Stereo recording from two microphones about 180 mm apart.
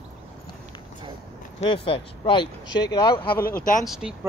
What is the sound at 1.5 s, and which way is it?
Speech, 30° left (ahead or behind).